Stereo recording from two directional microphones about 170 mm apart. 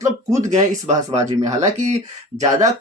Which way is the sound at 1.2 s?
20° right (ahead or behind).